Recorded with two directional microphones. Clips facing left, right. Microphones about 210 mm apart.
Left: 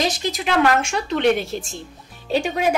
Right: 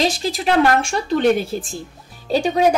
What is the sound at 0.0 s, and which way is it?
A woman's voice, 30° right (ahead or behind).